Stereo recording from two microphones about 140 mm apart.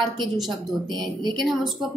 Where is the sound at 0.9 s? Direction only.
30° right (ahead or behind).